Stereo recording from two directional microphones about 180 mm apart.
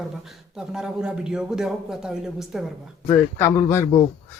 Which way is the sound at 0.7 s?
5° right (ahead or behind).